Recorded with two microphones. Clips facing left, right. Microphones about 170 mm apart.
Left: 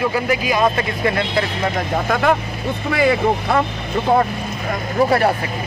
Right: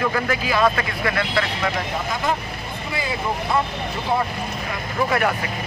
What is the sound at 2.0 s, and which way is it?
Speech, 60° left (ahead or behind).